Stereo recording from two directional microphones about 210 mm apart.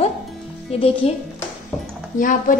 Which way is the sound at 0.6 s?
25° left (ahead or behind).